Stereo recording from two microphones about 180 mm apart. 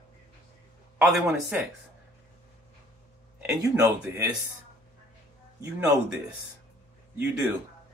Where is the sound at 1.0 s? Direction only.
5° right (ahead or behind).